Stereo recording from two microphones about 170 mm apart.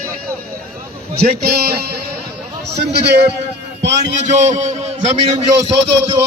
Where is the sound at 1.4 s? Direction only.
65° right (ahead or behind).